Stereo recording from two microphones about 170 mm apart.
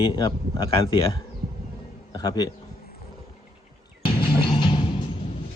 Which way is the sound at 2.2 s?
25° left (ahead or behind).